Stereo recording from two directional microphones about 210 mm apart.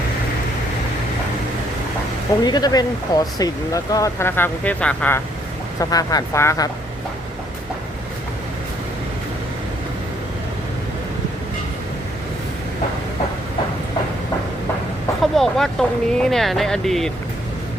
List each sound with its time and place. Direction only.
2.4 s speech: 20° left (ahead or behind)
15.2 s speech: centre (ahead or behind)